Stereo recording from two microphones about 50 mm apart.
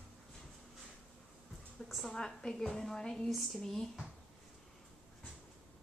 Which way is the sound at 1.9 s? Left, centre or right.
Centre.